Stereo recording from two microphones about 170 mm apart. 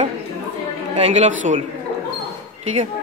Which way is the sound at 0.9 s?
40° right (ahead or behind).